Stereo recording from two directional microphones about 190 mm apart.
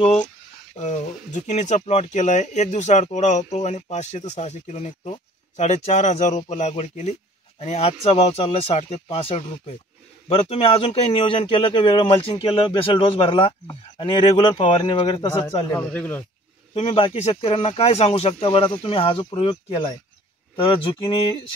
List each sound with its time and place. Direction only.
0.7 s speech: 35° left (ahead or behind)
15.7 s speech: 5° left (ahead or behind)
16.7 s speech: 30° left (ahead or behind)